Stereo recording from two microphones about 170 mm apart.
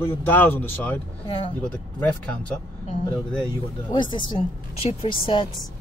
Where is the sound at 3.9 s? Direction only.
25° left (ahead or behind).